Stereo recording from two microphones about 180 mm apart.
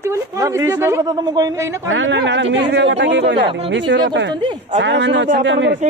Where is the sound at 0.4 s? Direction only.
15° right (ahead or behind).